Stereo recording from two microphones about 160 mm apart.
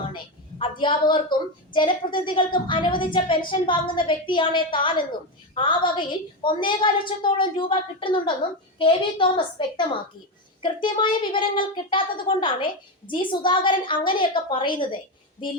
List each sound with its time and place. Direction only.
0.6 s a woman's voice: 30° left (ahead or behind)